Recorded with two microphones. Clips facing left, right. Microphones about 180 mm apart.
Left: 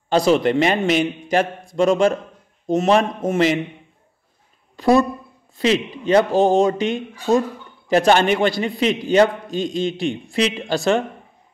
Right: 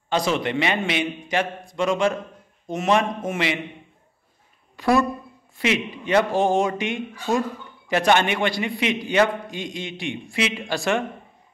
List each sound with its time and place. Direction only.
0.1 s speech: 35° left (ahead or behind)
5.6 s speech: 35° left (ahead or behind)